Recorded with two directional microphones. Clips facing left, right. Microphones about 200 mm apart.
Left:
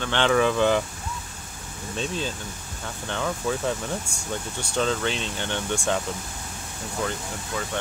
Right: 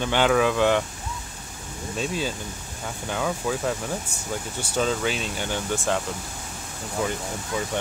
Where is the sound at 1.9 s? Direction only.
10° right (ahead or behind).